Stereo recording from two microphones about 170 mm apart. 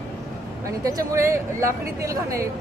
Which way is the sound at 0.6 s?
20° right (ahead or behind).